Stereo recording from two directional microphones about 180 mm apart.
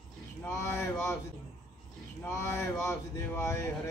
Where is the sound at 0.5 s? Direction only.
15° left (ahead or behind).